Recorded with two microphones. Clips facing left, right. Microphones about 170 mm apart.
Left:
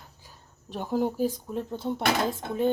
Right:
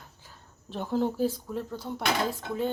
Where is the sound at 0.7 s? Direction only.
15° left (ahead or behind).